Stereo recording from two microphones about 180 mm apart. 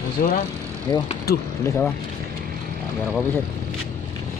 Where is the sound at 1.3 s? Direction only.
60° left (ahead or behind).